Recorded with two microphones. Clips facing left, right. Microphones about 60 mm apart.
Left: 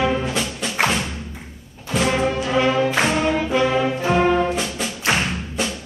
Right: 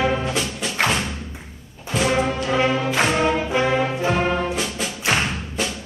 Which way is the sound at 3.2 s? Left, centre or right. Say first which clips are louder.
Left 1 dB; centre.